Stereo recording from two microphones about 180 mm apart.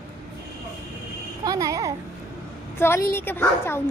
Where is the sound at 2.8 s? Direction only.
15° left (ahead or behind).